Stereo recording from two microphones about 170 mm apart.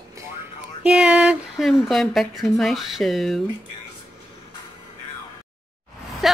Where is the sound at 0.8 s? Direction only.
5° right (ahead or behind).